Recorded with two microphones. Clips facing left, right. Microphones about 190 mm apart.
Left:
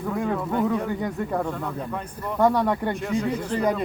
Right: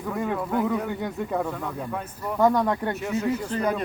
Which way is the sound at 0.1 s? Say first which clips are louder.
Even; 5° right (ahead or behind).